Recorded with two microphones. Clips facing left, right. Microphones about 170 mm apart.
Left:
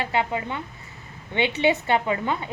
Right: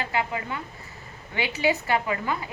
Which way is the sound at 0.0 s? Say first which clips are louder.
Left 3 dB; 25° left (ahead or behind).